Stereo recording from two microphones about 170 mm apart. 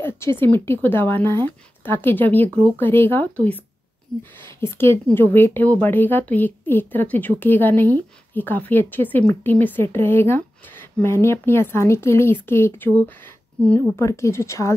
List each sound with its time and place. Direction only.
0.0 s a woman's voice: 15° left (ahead or behind)